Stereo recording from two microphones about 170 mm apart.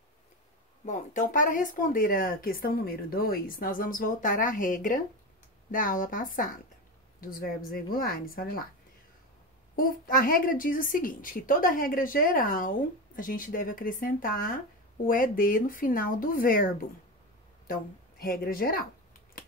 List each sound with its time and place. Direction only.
0.8 s a woman's voice: 50° left (ahead or behind)
9.8 s a woman's voice: 55° left (ahead or behind)